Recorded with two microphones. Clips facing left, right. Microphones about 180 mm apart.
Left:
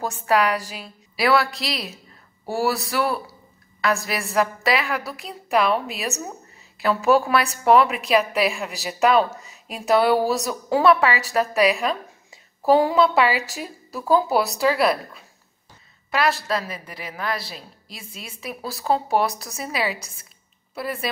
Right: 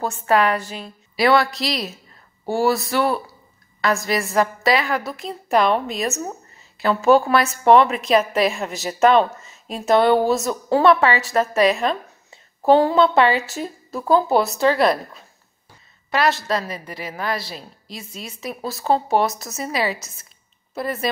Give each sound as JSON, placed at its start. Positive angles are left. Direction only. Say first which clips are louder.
{"t": 0.1, "sound": "a woman's voice", "louder": "right 2 dB", "side_deg": 0}